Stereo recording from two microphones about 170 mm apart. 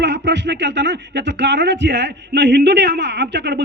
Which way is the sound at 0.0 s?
90° right.